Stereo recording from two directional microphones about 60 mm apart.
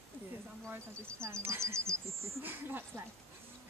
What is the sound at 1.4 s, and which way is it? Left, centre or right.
Speech, right.